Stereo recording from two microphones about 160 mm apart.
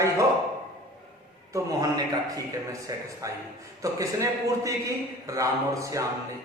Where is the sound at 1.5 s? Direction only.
25° right (ahead or behind).